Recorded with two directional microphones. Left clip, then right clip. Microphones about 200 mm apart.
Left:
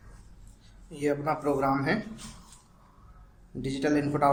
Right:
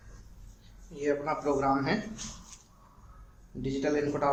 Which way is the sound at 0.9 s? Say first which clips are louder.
Left 1 dB; 35° left (ahead or behind).